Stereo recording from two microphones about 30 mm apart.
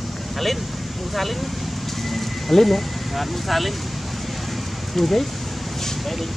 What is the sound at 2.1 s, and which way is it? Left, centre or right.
Speech, centre.